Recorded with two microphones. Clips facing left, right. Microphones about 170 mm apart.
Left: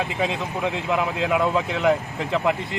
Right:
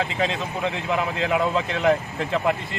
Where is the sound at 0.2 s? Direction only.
10° left (ahead or behind).